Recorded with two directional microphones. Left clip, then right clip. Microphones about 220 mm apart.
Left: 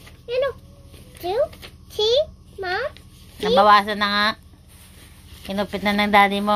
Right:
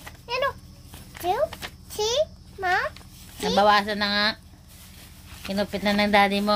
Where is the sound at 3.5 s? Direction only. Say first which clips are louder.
Left 5 dB; centre (ahead or behind).